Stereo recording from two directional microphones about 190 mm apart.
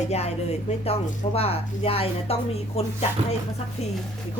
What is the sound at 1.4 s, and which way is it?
Speech, 30° left (ahead or behind).